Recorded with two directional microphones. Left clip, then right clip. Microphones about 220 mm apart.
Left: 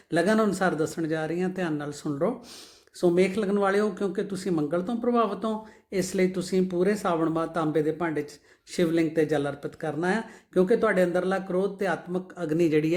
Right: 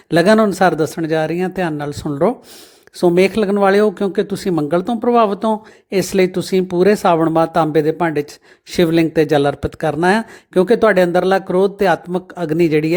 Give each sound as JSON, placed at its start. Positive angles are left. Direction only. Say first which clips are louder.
{"t": 0.1, "sound": "speech", "louder": "right 12 dB", "side_deg": -35}